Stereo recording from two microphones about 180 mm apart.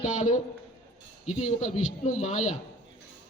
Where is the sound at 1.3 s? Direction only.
40° left (ahead or behind).